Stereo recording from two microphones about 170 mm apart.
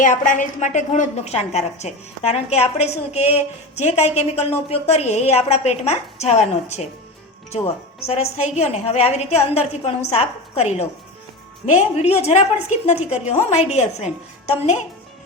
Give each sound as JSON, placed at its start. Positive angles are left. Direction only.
{"t": 0.0, "sound": "a woman's voice", "side_deg": 50}